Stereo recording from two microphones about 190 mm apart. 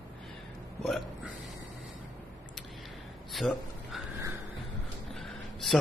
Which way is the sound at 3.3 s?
Centre (ahead or behind).